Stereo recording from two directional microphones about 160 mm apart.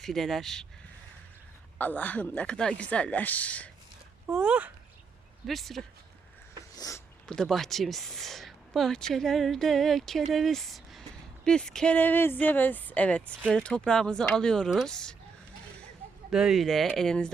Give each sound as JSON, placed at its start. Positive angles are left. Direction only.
{"t": 0.0, "sound": "speech", "side_deg": 0}
{"t": 1.8, "sound": "a woman's voice", "side_deg": 10}
{"t": 4.3, "sound": "speech", "side_deg": -5}
{"t": 6.7, "sound": "speech", "side_deg": 20}
{"t": 7.3, "sound": "speech", "side_deg": 0}
{"t": 16.3, "sound": "speech", "side_deg": 0}